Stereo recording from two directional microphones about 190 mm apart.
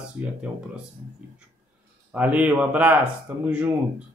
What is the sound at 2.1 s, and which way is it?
Speech, 10° right (ahead or behind).